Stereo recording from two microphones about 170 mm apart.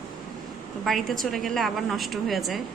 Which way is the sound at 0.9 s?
Centre (ahead or behind).